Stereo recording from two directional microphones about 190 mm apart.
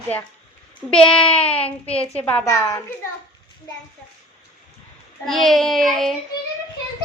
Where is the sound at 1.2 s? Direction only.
5° left (ahead or behind).